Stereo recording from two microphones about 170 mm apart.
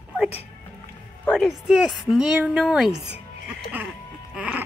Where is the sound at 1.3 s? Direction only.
Centre (ahead or behind).